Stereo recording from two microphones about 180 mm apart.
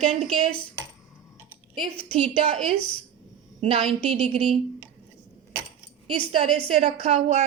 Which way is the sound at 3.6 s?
30° right (ahead or behind).